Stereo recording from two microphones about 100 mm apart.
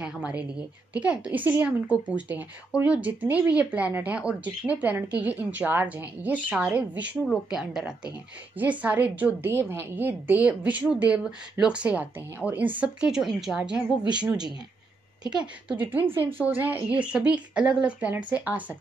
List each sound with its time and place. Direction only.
0.0 s a woman's voice: 10° right (ahead or behind)
15.7 s a woman's voice: 15° right (ahead or behind)